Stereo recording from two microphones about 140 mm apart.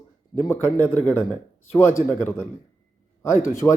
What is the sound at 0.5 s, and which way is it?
Speech, 15° left (ahead or behind).